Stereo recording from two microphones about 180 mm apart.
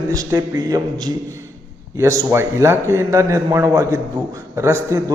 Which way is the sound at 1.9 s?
15° right (ahead or behind).